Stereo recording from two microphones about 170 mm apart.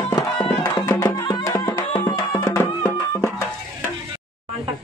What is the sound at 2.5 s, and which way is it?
Music, 15° left (ahead or behind).